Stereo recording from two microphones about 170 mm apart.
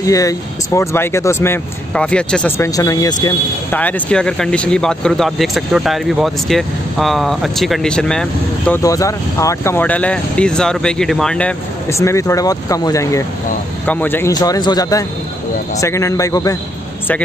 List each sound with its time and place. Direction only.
0.0 s speech: 20° left (ahead or behind)
3.7 s speech: 10° left (ahead or behind)
8.8 s speech: 20° left (ahead or behind)
12.0 s speech: 15° left (ahead or behind)